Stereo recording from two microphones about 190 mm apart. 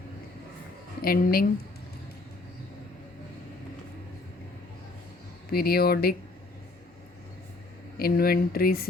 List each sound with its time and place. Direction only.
1.0 s speech: 50° left (ahead or behind)
5.5 s speech: 55° left (ahead or behind)
7.9 s speech: 50° left (ahead or behind)